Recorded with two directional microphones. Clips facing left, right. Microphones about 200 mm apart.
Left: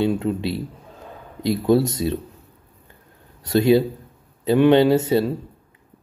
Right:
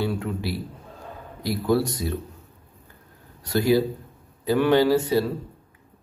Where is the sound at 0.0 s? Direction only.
20° left (ahead or behind).